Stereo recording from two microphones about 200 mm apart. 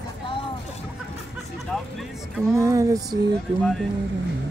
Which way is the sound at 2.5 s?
15° right (ahead or behind).